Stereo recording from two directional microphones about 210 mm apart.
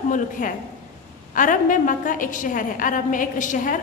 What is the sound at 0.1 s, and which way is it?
A woman's voice, 40° left (ahead or behind).